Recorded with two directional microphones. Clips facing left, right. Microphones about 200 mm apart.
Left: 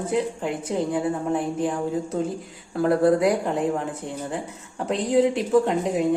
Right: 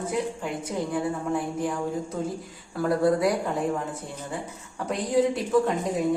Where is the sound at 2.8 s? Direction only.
25° left (ahead or behind).